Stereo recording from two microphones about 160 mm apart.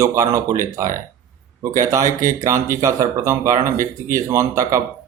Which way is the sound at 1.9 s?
20° right (ahead or behind).